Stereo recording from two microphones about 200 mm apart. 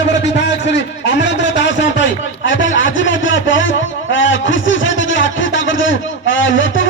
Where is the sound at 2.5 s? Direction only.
70° left (ahead or behind).